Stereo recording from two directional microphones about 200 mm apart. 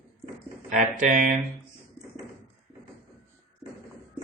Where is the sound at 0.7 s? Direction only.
40° right (ahead or behind).